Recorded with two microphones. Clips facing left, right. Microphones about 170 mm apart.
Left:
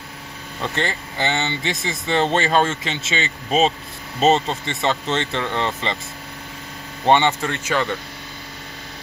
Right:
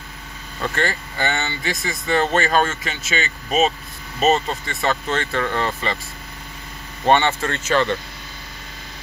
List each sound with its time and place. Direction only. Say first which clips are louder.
0.6 s speech: right 1 dB; 20° left (ahead or behind)
7.1 s speech: even; 15° left (ahead or behind)